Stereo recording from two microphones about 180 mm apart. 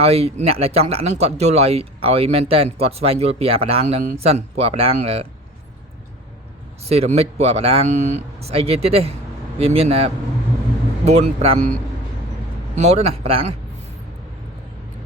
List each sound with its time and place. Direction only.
0.0 s speech: 35° right (ahead or behind)
6.8 s speech: 35° right (ahead or behind)
12.7 s speech: 40° right (ahead or behind)